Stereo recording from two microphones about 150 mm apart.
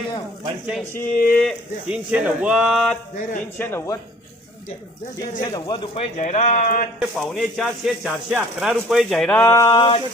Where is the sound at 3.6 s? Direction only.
15° left (ahead or behind).